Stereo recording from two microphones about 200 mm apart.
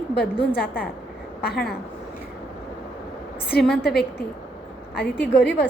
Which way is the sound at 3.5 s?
50° left (ahead or behind).